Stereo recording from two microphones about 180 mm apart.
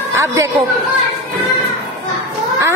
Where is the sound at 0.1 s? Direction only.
15° right (ahead or behind).